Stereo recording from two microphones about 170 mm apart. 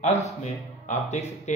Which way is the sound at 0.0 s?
40° left (ahead or behind).